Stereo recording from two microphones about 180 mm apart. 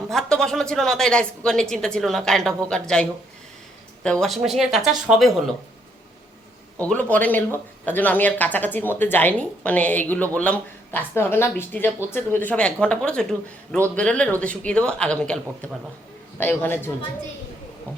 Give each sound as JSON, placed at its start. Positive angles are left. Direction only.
{"t": 0.1, "sound": "a woman's voice", "side_deg": 0}
{"t": 6.7, "sound": "a woman's voice", "side_deg": 10}